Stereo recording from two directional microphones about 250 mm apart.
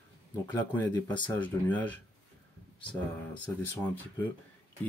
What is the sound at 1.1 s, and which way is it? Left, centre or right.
Speech, centre.